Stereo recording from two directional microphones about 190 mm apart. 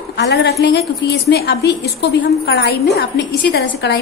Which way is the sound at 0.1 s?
65° left (ahead or behind).